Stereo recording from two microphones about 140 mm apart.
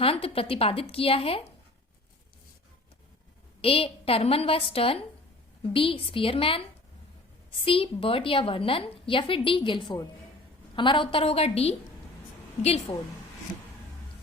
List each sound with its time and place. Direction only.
0.0 s a woman's voice: 45° left (ahead or behind)
3.6 s a woman's voice: 45° left (ahead or behind)